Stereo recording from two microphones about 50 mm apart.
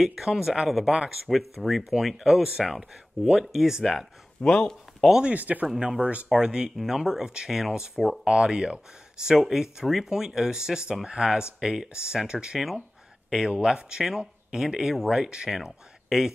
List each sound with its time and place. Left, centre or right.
0.0 s speech: centre
4.4 s speech: centre
5.2 s speech: right
5.8 s speech: centre
12.5 s speech: centre
13.5 s speech: centre
15.5 s speech: centre